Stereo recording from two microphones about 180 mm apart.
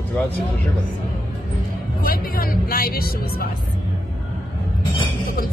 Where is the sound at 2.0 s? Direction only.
55° left (ahead or behind).